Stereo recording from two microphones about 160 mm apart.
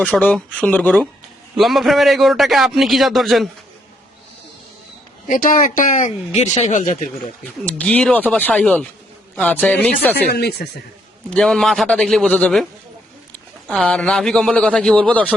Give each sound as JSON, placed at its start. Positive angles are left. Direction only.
{"t": 0.0, "sound": "a man's voice", "side_deg": 10}
{"t": 5.3, "sound": "speech", "side_deg": 55}
{"t": 7.7, "sound": "speech", "side_deg": 5}
{"t": 10.2, "sound": "speech", "side_deg": 85}
{"t": 11.3, "sound": "a man's voice", "side_deg": 5}
{"t": 13.7, "sound": "a man's voice", "side_deg": 5}